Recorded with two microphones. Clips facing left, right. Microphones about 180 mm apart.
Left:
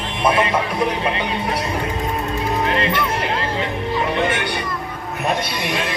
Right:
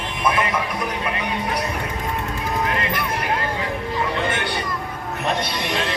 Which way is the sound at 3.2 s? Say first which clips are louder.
Left 2 dB; 25° left (ahead or behind).